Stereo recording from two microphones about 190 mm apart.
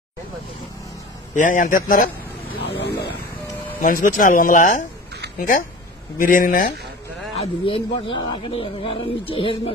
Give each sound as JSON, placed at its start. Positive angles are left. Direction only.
{"t": 1.3, "sound": "speech", "side_deg": 40}
{"t": 2.8, "sound": "a sound", "side_deg": 60}
{"t": 3.8, "sound": "speech", "side_deg": 45}
{"t": 6.1, "sound": "speech", "side_deg": 45}
{"t": 7.3, "sound": "speech", "side_deg": 30}